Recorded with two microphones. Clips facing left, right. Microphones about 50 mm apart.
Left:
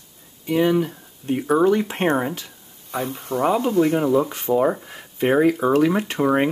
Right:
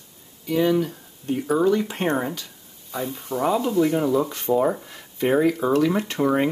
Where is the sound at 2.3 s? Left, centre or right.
Left.